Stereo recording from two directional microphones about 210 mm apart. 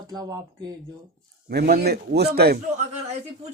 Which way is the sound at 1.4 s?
50° right (ahead or behind).